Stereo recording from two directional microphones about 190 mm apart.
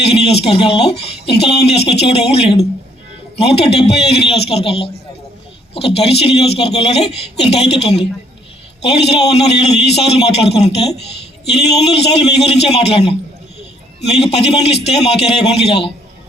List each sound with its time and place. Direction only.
0.0 s a sound: 35° left (ahead or behind)
0.4 s a man's voice: 30° left (ahead or behind)
8.8 s a man's voice: 35° left (ahead or behind)